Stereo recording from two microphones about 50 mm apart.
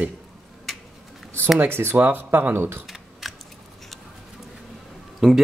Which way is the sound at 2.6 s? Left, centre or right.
Right.